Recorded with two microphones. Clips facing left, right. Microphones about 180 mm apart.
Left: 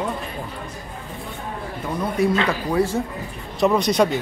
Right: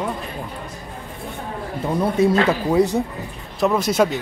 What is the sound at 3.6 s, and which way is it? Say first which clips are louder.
Speech: even; centre (ahead or behind).